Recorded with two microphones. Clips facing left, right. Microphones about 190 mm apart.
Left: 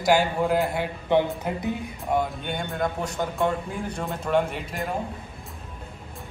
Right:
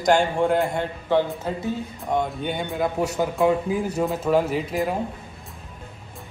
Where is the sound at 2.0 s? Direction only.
Centre (ahead or behind).